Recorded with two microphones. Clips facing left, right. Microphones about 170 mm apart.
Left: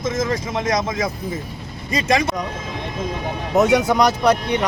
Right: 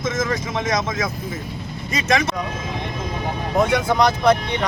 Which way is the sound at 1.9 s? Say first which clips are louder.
Left 2 dB; 30° left (ahead or behind).